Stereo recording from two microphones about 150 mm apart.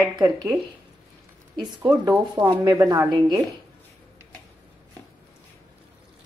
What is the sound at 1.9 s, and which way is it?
A woman's voice, 25° right (ahead or behind).